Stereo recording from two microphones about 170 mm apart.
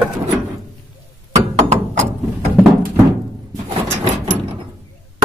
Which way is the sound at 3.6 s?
40° right (ahead or behind).